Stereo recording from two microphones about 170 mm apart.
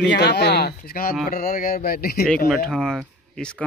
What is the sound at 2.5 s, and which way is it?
Speech, centre (ahead or behind).